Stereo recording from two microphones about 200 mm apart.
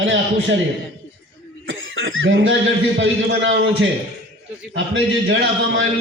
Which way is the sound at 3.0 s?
65° right (ahead or behind).